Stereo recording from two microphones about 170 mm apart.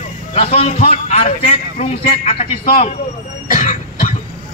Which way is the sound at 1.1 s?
35° left (ahead or behind).